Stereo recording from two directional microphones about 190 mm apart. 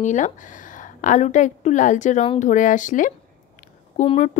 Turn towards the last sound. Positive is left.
turn(degrees=35)  # may be behind; listen again after turning